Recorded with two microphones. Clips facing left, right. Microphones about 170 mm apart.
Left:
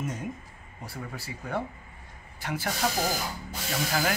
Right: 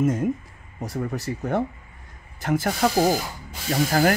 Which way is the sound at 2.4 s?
45° right (ahead or behind).